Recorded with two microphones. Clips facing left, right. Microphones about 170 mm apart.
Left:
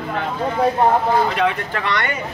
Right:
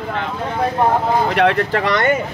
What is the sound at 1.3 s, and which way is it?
Speech, 65° right (ahead or behind).